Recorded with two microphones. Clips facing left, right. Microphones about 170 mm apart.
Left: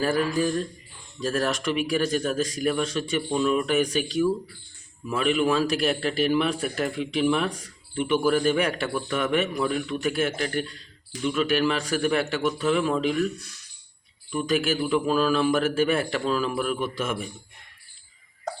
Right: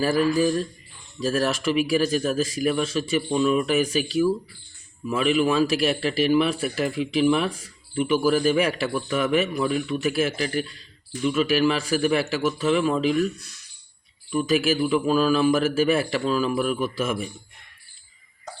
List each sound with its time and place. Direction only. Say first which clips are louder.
0.0 s a man's voice: right 3 dB; 5° right (ahead or behind)
14.3 s a man's voice: right 3 dB; 5° right (ahead or behind)